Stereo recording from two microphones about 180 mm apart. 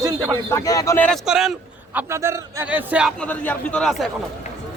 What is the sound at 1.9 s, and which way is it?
A man's voice, 15° right (ahead or behind).